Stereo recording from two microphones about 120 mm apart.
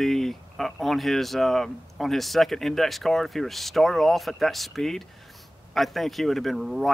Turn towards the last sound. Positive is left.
turn(degrees=0)  # may be behind; listen again after turning